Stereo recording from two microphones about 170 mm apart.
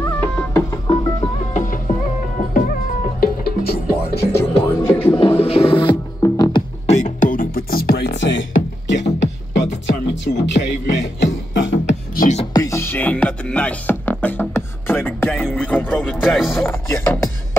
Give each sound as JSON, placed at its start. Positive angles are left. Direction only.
{"t": 0.0, "sound": "music", "side_deg": 15}
{"t": 1.5, "sound": "music", "side_deg": 45}
{"t": 4.4, "sound": "music", "side_deg": 15}
{"t": 5.4, "sound": "music", "side_deg": 35}
{"t": 6.9, "sound": "music", "side_deg": 50}
{"t": 11.5, "sound": "beatboxing", "side_deg": 90}
{"t": 11.9, "sound": "beatboxing", "side_deg": 45}
{"t": 12.5, "sound": "music", "side_deg": 15}
{"t": 16.6, "sound": "music", "side_deg": 15}